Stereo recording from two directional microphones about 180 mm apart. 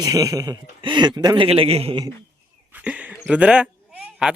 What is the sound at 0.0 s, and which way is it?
Speech, 20° right (ahead or behind).